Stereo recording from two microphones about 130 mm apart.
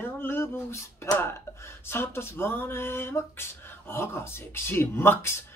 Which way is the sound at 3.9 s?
20° left (ahead or behind).